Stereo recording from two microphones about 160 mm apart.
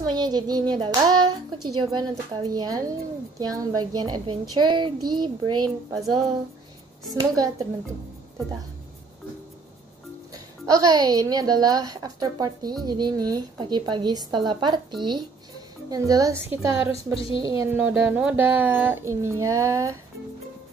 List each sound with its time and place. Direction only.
0.1 s speech: 25° right (ahead or behind)
7.1 s speech: 25° right (ahead or behind)
10.3 s speech: 20° right (ahead or behind)
17.7 s speech: 10° right (ahead or behind)